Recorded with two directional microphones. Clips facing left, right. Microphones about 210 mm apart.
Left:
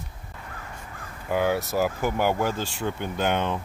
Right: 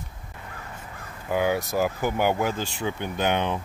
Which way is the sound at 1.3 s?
Centre (ahead or behind).